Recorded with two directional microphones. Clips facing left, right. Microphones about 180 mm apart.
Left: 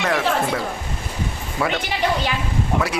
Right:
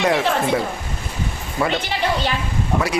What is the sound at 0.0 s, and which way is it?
Speech, 15° right (ahead or behind).